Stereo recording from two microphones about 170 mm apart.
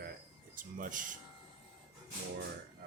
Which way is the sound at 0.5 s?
55° right (ahead or behind).